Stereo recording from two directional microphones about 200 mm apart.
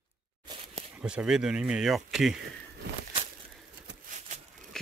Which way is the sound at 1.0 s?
5° right (ahead or behind).